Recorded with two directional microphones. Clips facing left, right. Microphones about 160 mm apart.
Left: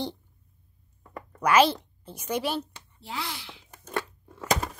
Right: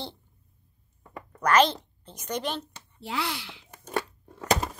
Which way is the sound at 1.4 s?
10° left (ahead or behind).